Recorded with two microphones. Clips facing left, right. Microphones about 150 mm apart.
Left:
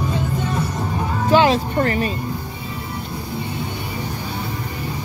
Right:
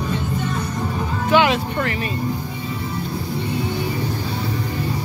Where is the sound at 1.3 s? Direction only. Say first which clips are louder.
Left 2 dB; 35° left (ahead or behind).